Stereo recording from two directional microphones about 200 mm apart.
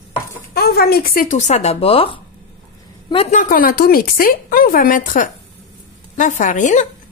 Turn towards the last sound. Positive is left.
turn(degrees=40)  # may be behind; listen again after turning